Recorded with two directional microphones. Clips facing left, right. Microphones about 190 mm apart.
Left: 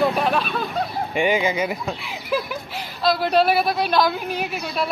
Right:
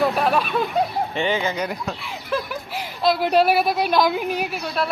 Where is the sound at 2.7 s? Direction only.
10° right (ahead or behind).